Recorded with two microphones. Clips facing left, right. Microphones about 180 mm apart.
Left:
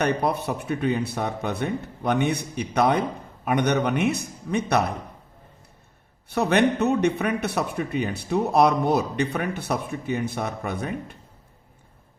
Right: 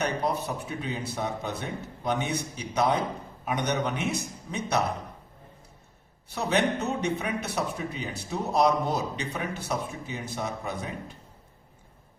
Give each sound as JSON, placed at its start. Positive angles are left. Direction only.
{"t": 0.0, "sound": "a man's voice", "side_deg": 60}
{"t": 6.2, "sound": "a man's voice", "side_deg": 60}